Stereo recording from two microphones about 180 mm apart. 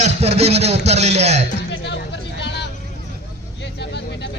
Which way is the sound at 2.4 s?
70° left (ahead or behind).